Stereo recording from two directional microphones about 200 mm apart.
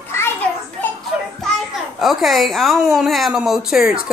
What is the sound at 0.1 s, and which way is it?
Children playing, 10° left (ahead or behind).